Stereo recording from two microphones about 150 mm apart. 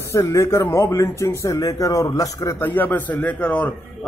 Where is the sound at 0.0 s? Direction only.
20° left (ahead or behind).